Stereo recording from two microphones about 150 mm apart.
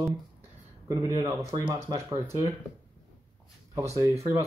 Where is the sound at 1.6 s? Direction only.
35° right (ahead or behind).